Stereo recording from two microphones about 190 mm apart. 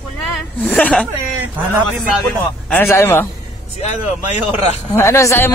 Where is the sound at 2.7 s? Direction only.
10° left (ahead or behind).